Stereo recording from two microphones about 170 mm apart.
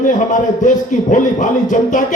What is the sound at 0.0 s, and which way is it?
A man's voice, 50° left (ahead or behind).